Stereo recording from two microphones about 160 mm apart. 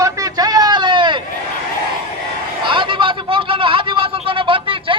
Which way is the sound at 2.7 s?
30° right (ahead or behind).